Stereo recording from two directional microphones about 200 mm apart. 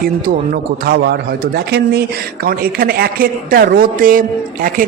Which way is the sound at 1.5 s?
55° right (ahead or behind).